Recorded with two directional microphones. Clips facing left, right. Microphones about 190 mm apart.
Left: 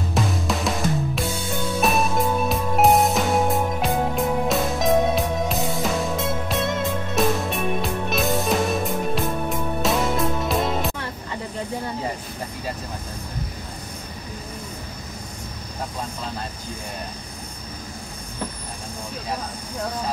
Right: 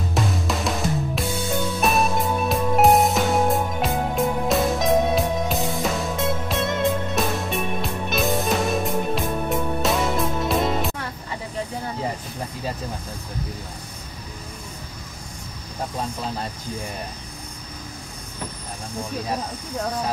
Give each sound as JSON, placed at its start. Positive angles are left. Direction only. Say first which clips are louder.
{"t": 0.1, "sound": "music", "louder": "left 1 dB", "side_deg": 0}